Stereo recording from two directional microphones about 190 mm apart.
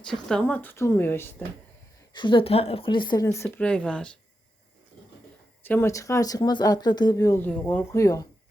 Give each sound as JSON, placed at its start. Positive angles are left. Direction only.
{"t": 0.0, "sound": "speech", "side_deg": 5}
{"t": 2.1, "sound": "a woman's voice", "side_deg": 25}
{"t": 5.6, "sound": "speech", "side_deg": 10}
{"t": 7.9, "sound": "speech", "side_deg": 15}